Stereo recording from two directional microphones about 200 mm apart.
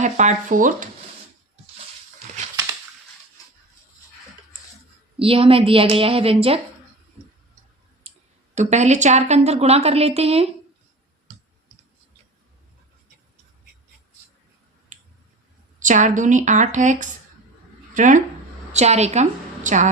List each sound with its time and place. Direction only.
0.0 s a woman's voice: 35° right (ahead or behind)
5.2 s a woman's voice: 25° right (ahead or behind)
8.5 s a woman's voice: 35° right (ahead or behind)
14.9 s finger snapping: 40° right (ahead or behind)
15.8 s a woman's voice: 40° right (ahead or behind)